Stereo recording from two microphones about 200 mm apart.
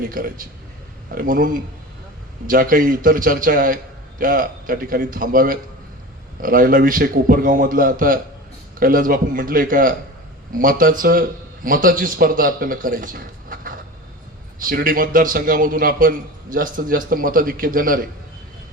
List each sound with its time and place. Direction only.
0.1 s a man's voice: 45° right (ahead or behind)